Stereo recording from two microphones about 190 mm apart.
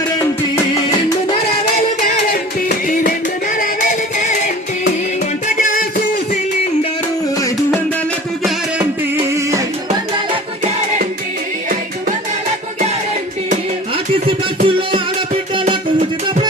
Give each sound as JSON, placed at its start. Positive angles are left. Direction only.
{"t": 2.0, "sound": "music", "side_deg": 50}
{"t": 5.5, "sound": "music", "side_deg": 45}
{"t": 9.2, "sound": "music", "side_deg": -15}
{"t": 13.9, "sound": "a sound", "side_deg": -30}
{"t": 15.7, "sound": "music", "side_deg": -25}